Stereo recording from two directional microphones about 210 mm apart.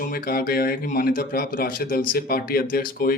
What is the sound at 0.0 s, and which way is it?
A man's voice, 45° left (ahead or behind).